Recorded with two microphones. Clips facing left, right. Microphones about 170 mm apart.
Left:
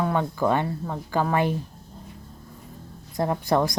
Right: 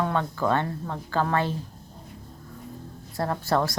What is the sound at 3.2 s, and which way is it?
Speech, 15° left (ahead or behind).